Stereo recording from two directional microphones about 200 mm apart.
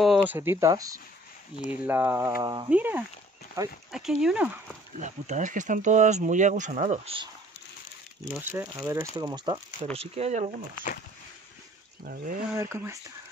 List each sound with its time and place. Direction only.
0.0 s speech: 5° right (ahead or behind)
3.9 s speech: 5° right (ahead or behind)
4.9 s speech: 35° right (ahead or behind)
8.4 s speech: 10° right (ahead or behind)
9.9 s speech: 30° right (ahead or behind)
12.0 s speech: 45° right (ahead or behind)
12.5 s speech: 10° right (ahead or behind)